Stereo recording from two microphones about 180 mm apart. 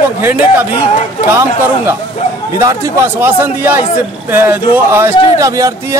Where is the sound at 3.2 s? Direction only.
10° right (ahead or behind).